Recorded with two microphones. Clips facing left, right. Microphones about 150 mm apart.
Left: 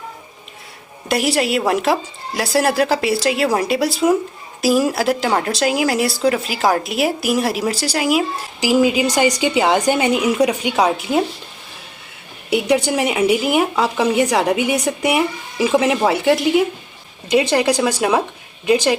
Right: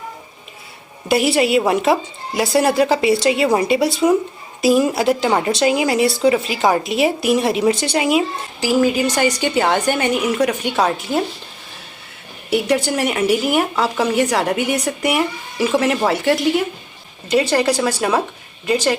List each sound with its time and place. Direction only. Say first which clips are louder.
1.0 s speech: right 2 dB; centre (ahead or behind)
8.6 s speech: left 1 dB; 15° left (ahead or behind)
12.5 s speech: left 1 dB; 15° left (ahead or behind)